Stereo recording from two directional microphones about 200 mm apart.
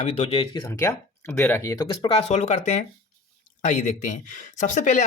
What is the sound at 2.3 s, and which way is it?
Speech, 35° left (ahead or behind).